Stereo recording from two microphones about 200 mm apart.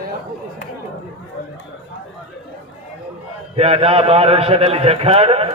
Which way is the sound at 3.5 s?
30° right (ahead or behind).